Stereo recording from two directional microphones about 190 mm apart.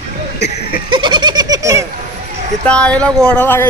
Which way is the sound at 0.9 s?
25° right (ahead or behind).